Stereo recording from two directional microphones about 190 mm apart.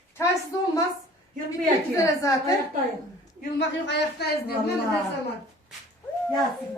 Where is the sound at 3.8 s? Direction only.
60° left (ahead or behind).